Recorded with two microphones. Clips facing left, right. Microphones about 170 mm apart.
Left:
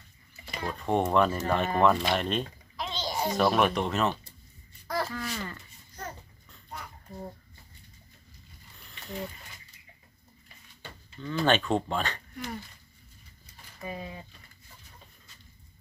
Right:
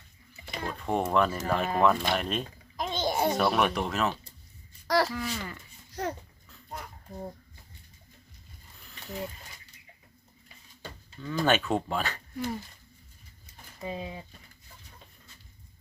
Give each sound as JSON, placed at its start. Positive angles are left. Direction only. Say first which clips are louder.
{"t": 0.5, "sound": "speech", "louder": "left 2 dB", "side_deg": 0}
{"t": 2.7, "sound": "a sound", "louder": "right 4 dB", "side_deg": -50}
{"t": 3.3, "sound": "speech", "louder": "left 1 dB", "side_deg": 0}
{"t": 4.9, "sound": "a sound", "louder": "right 6 dB", "side_deg": -85}
{"t": 5.1, "sound": "speech", "louder": "right 1 dB", "side_deg": 0}
{"t": 5.9, "sound": "babbling", "louder": "right 8 dB", "side_deg": -75}
{"t": 8.8, "sound": "mechanisms", "louder": "even", "side_deg": 0}
{"t": 11.2, "sound": "speech", "louder": "even", "side_deg": -5}
{"t": 13.8, "sound": "speech", "louder": "right 2 dB", "side_deg": -20}